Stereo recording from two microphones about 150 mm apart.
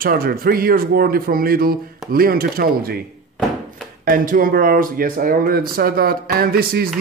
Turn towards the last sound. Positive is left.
turn(degrees=-85)